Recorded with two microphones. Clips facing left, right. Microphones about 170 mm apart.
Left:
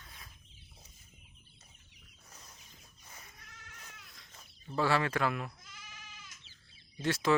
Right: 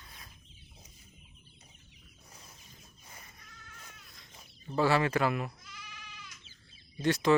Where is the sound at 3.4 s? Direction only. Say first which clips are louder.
Right 1 dB; 80° left.